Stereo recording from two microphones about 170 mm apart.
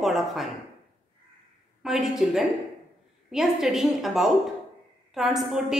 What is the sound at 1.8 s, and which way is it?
A woman's voice, centre (ahead or behind).